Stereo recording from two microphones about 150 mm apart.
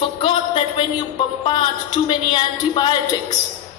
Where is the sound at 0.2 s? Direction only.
35° left (ahead or behind).